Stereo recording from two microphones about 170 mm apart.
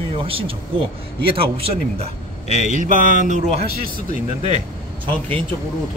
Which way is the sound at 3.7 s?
60° right (ahead or behind).